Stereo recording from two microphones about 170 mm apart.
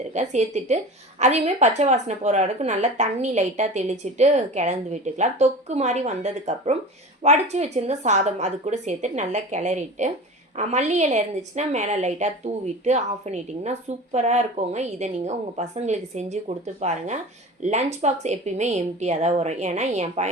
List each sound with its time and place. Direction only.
0.1 s a woman's voice: 45° right (ahead or behind)